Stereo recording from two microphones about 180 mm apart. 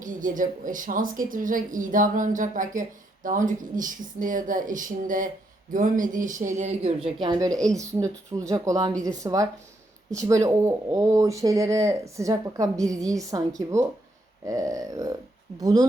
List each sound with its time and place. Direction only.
0.0 s a woman's voice: 45° right (ahead or behind)
7.2 s speech: 20° right (ahead or behind)